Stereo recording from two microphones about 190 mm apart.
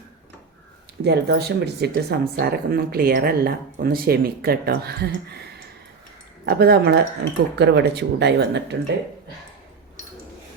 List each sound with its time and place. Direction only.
1.0 s speech: 60° right (ahead or behind)